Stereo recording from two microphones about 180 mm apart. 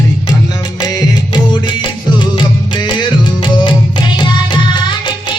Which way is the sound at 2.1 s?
25° left (ahead or behind).